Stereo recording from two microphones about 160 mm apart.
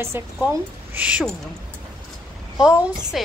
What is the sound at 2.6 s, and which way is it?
Speech, 5° right (ahead or behind).